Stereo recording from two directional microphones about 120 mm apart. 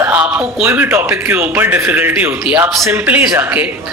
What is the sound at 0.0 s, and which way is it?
Speech, 15° right (ahead or behind).